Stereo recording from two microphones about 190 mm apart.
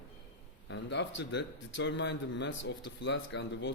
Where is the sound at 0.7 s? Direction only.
65° left (ahead or behind).